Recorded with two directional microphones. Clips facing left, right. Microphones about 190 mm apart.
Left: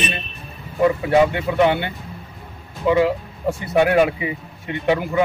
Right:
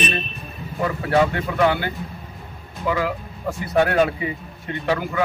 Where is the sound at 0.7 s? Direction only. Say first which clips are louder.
Left 4 dB; 15° left (ahead or behind).